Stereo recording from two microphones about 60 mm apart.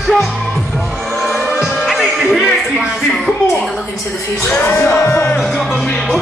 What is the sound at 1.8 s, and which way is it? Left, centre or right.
Music, centre.